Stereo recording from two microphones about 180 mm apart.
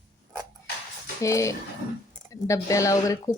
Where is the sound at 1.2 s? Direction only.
15° left (ahead or behind).